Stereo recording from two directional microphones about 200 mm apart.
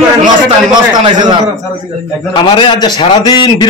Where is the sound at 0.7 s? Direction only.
20° right (ahead or behind).